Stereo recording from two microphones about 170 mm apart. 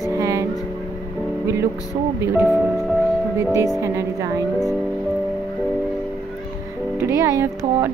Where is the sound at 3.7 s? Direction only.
15° right (ahead or behind).